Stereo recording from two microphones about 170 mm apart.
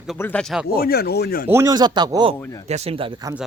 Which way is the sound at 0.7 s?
60° left (ahead or behind).